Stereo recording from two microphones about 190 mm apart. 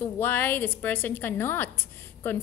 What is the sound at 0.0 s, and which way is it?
A woman's voice, 10° left (ahead or behind).